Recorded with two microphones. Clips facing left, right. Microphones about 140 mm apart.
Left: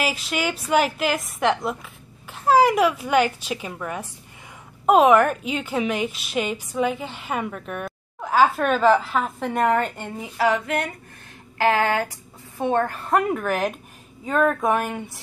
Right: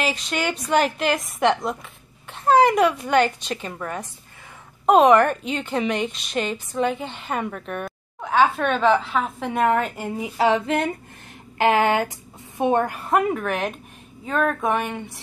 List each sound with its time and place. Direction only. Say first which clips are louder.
0.0 s a woman's voice: even; 5° left (ahead or behind); by 10.3 s 10° right (ahead or behind)
10.3 s a sound: right 2 dB; 25° right (ahead or behind)
12.5 s a woman's voice: right 2 dB; 15° right (ahead or behind); by 15.1 s 5° left (ahead or behind)